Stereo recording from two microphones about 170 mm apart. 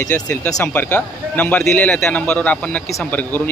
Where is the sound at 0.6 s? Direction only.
10° left (ahead or behind).